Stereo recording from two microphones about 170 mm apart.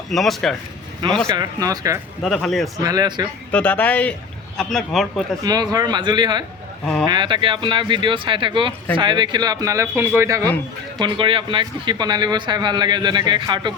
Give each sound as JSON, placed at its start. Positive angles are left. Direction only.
{"t": 0.1, "sound": "a man's voice", "side_deg": 0}
{"t": 1.0, "sound": "speech", "side_deg": -25}
{"t": 2.2, "sound": "a man's voice", "side_deg": 5}
{"t": 2.7, "sound": "speech", "side_deg": -20}
{"t": 3.5, "sound": "a man's voice", "side_deg": 5}
{"t": 5.4, "sound": "speech", "side_deg": -20}
{"t": 10.4, "sound": "speech", "side_deg": 10}
{"t": 11.0, "sound": "speech", "side_deg": -30}